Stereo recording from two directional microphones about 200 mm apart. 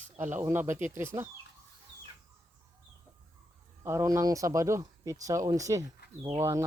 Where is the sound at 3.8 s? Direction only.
15° right (ahead or behind).